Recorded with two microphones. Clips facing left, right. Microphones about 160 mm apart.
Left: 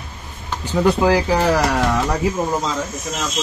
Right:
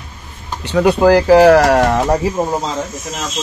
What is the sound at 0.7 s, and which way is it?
Speech, 65° right (ahead or behind).